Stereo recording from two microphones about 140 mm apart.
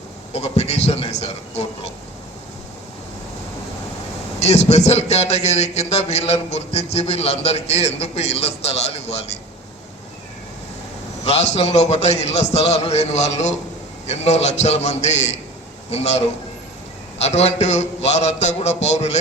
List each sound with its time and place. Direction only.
0.3 s a man's voice: 50° left (ahead or behind)
4.4 s a man's voice: 50° left (ahead or behind)
11.3 s a man's voice: 50° left (ahead or behind)